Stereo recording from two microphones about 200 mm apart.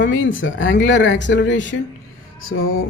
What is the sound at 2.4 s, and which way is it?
Speech, 85° left.